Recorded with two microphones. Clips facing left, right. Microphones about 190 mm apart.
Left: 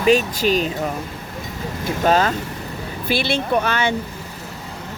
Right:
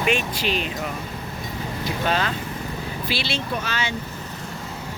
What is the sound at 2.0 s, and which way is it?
Speech, 45° left (ahead or behind).